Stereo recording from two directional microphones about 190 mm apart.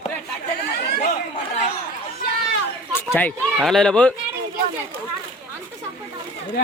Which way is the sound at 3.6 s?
Centre (ahead or behind).